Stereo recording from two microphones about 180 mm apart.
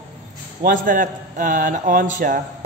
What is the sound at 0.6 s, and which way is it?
A man's voice, 45° right (ahead or behind).